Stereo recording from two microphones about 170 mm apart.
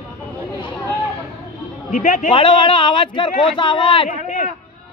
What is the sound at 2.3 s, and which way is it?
A man's voice, 30° left (ahead or behind).